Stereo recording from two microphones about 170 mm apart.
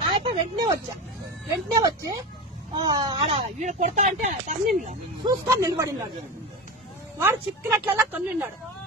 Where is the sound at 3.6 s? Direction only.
45° right (ahead or behind).